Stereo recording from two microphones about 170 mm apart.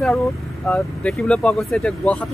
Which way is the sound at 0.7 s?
5° left (ahead or behind).